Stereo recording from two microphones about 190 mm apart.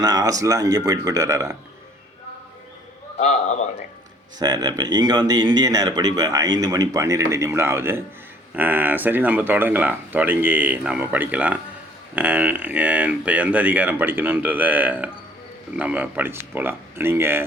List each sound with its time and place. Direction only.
0.0 s speech: 20° right (ahead or behind)
3.2 s a man's voice: 35° left (ahead or behind)
4.4 s speech: 20° right (ahead or behind)